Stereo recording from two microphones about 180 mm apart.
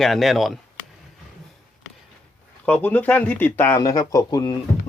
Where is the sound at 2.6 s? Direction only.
10° left (ahead or behind).